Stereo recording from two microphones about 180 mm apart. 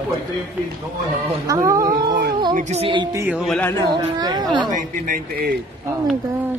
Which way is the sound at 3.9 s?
20° right (ahead or behind).